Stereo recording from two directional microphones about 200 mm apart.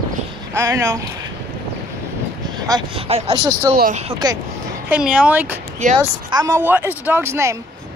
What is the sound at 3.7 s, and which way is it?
Speech, 45° right (ahead or behind).